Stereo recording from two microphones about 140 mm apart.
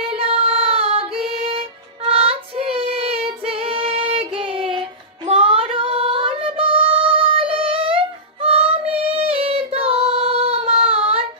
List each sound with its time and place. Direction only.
0.0 s music: 40° right (ahead or behind)
2.0 s child singing: 40° right (ahead or behind)